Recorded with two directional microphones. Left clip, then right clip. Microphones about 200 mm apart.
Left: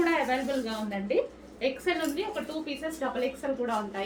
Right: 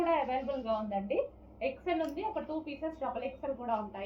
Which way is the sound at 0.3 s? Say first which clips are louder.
Left 3 dB; 20° left (ahead or behind).